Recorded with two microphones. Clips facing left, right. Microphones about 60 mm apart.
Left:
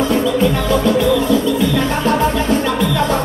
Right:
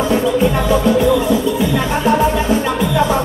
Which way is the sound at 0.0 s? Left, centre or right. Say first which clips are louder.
Even; right.